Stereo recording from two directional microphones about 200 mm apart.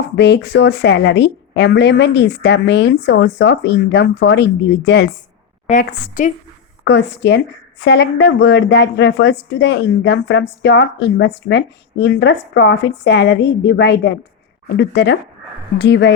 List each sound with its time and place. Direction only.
0.2 s speech: 60° left (ahead or behind)
5.6 s a woman's voice: 40° left (ahead or behind)
6.8 s speech: 60° left (ahead or behind)